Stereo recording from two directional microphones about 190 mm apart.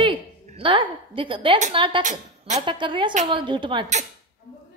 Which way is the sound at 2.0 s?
40° right (ahead or behind).